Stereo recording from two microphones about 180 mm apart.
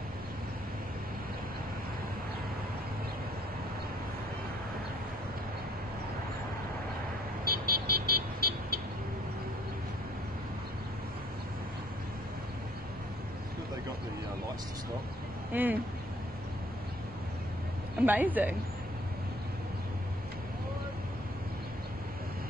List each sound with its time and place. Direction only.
7.4 s vehicle: 55° right (ahead or behind)
15.5 s a woman's voice: 10° right (ahead or behind)
18.0 s a woman's voice: 10° right (ahead or behind)